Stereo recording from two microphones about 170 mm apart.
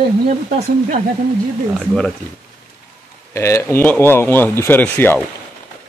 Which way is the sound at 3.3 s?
15° left (ahead or behind).